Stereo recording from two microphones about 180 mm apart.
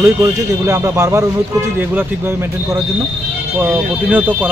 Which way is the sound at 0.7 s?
15° right (ahead or behind).